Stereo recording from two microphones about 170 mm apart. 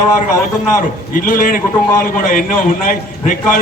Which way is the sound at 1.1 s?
55° left (ahead or behind).